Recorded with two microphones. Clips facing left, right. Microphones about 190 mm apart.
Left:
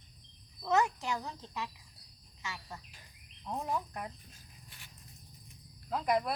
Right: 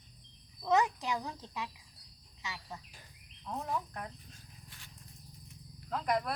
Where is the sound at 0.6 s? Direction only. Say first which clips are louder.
Right 1 dB; 15° right (ahead or behind).